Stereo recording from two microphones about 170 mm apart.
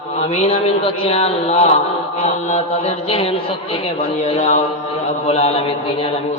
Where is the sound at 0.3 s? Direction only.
40° left (ahead or behind).